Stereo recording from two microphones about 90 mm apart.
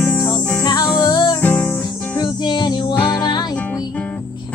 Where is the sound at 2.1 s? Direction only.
55° left (ahead or behind).